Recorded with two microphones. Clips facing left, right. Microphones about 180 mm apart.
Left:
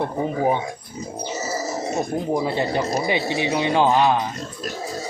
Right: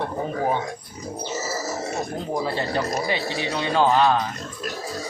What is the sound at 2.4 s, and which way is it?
Speech, 15° left (ahead or behind).